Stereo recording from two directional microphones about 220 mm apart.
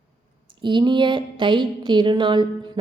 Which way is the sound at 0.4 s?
20° right (ahead or behind).